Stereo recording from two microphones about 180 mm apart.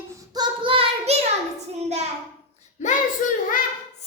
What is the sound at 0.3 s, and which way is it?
Child singing, 30° right (ahead or behind).